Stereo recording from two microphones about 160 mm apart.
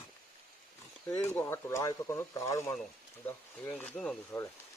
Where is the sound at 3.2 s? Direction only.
10° left (ahead or behind).